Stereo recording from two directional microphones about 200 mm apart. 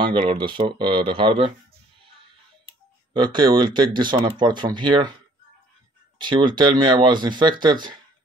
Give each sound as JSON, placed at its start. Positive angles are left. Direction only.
{"t": 0.0, "sound": "speech", "side_deg": -25}
{"t": 3.1, "sound": "speech", "side_deg": -25}
{"t": 6.1, "sound": "speech", "side_deg": -25}